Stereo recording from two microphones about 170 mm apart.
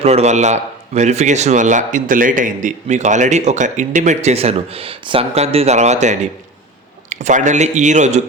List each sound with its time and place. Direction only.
0.0 s speech: 40° right (ahead or behind)